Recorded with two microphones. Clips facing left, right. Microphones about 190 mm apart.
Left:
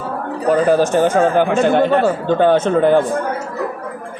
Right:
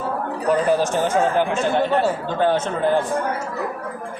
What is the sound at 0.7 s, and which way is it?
Speech, 55° left (ahead or behind).